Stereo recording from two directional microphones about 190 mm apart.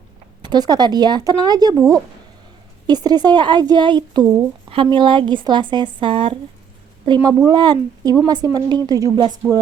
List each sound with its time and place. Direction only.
0.4 s speech: 20° right (ahead or behind)
7.2 s speech: 20° right (ahead or behind)